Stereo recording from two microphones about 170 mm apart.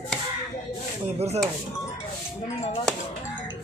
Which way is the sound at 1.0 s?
40° right (ahead or behind).